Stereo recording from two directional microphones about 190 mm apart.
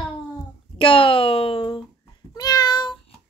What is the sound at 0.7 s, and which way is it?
Speech, 30° left (ahead or behind).